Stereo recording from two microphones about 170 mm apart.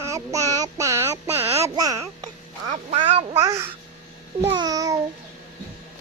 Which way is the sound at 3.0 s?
35° right (ahead or behind).